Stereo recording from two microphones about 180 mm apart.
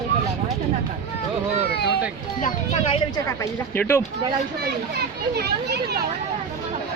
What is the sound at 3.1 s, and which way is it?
Speech, 20° left (ahead or behind).